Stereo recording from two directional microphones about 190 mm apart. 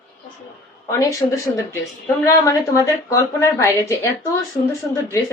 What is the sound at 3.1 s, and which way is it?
Speech, 15° left (ahead or behind).